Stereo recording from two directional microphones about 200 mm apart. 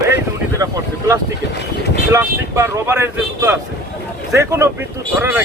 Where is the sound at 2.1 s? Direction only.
15° right (ahead or behind).